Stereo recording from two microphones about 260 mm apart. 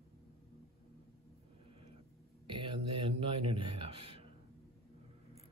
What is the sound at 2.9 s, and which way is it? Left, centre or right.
Speech, centre.